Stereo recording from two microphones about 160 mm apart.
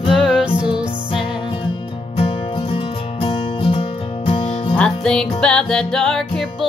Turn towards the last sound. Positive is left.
turn(degrees=0)  # may be behind; listen again after turning